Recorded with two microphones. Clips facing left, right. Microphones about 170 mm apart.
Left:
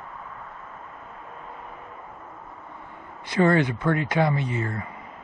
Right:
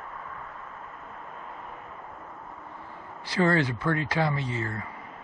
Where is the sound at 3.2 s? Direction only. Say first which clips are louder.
Left 4 dB; 20° left (ahead or behind).